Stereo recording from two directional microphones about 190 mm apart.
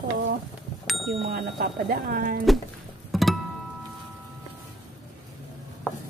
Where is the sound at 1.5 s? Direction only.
50° right (ahead or behind).